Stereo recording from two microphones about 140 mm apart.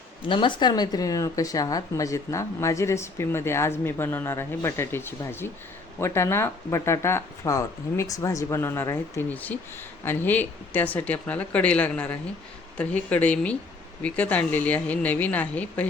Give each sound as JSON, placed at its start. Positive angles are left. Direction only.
{"t": 0.3, "sound": "speech", "side_deg": 35}